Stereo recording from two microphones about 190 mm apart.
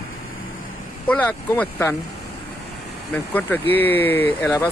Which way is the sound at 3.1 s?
10° left (ahead or behind).